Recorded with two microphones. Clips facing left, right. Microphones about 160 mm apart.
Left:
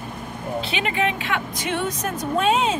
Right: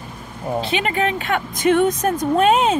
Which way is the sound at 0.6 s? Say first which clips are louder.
Right 3 dB; 40° right (ahead or behind).